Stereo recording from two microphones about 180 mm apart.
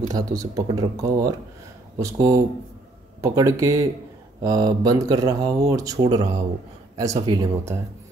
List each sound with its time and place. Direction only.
0.1 s speech: 20° right (ahead or behind)